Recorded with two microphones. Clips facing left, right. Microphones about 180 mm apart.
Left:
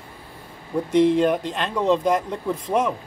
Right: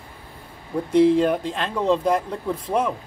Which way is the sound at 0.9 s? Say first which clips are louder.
Right 1 dB; 5° right (ahead or behind).